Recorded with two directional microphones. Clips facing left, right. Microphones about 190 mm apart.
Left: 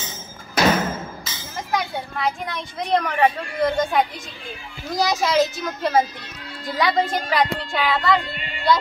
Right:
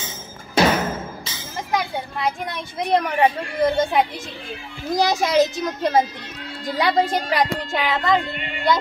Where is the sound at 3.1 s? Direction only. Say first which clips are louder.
Right 1 dB; 25° right (ahead or behind).